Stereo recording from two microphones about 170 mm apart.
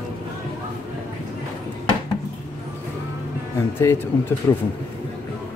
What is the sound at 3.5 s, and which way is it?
Speech, 15° left (ahead or behind).